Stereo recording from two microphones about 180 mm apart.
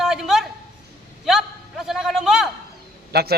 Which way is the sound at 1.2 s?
Centre (ahead or behind).